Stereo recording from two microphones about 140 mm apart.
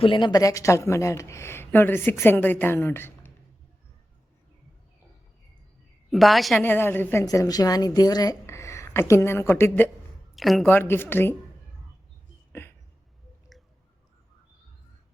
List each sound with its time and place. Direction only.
0.0 s a woman's voice: 35° left (ahead or behind); by 3.3 s 15° left (ahead or behind)
6.1 s a woman's voice: centre (ahead or behind)
6.6 s a woman's voice: 15° left (ahead or behind)
10.3 s a woman's voice: centre (ahead or behind)
10.7 s a woman's voice: 15° left (ahead or behind)
13.5 s chewing: centre (ahead or behind)